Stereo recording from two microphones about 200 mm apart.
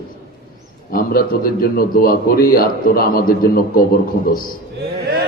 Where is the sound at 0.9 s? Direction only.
50° left (ahead or behind).